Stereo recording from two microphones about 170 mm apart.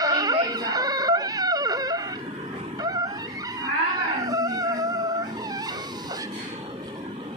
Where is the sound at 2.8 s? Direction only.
20° right (ahead or behind).